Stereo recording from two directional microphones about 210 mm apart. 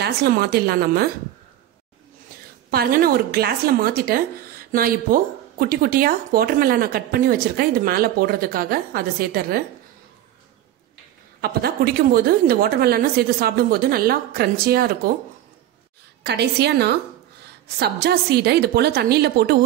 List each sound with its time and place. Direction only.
0.0 s speech: 50° right (ahead or behind)
2.7 s speech: 45° right (ahead or behind)
11.4 s speech: 45° right (ahead or behind)
16.3 s speech: 50° right (ahead or behind)